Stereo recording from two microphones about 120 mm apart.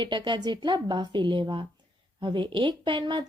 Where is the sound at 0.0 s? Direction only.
40° right (ahead or behind).